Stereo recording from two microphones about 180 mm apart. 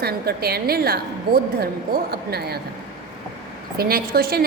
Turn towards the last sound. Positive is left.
turn(degrees=-55)  # may be behind; listen again after turning